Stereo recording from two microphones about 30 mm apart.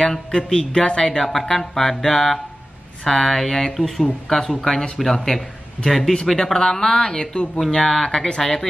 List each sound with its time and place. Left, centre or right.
0.3 s speech: left
0.6 s speech: left
1.2 s speech: centre